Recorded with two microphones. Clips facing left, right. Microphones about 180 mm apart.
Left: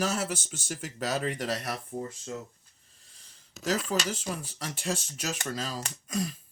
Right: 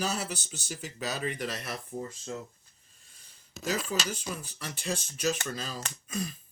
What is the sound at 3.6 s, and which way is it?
Speech, 85° left.